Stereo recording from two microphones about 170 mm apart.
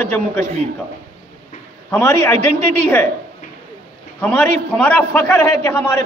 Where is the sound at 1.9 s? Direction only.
15° left (ahead or behind).